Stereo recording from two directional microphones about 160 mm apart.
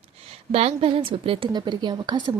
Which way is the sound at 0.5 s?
35° right (ahead or behind).